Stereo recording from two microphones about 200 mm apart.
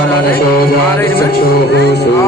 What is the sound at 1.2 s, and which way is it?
Speech, 55° left (ahead or behind).